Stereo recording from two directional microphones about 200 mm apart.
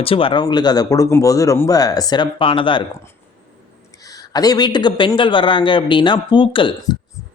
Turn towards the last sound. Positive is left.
turn(degrees=25)  # may be behind; listen again after turning